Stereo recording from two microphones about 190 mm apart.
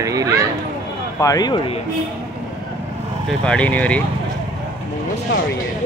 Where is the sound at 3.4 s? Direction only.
5° left (ahead or behind).